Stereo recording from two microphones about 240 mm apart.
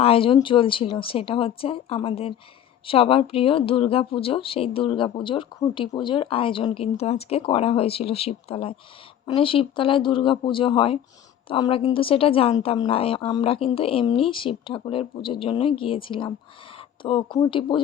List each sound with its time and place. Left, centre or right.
0.0 s speech: left